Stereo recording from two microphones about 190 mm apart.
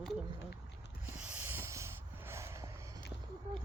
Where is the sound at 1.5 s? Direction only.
15° right (ahead or behind).